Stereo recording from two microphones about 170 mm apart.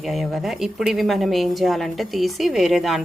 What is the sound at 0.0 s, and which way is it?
Speech, centre (ahead or behind).